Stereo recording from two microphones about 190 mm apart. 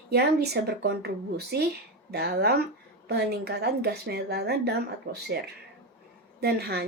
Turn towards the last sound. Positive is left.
turn(degrees=-60)  # may be behind; listen again after turning